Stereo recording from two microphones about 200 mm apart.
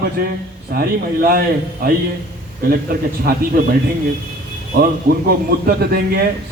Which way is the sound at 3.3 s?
50° right (ahead or behind).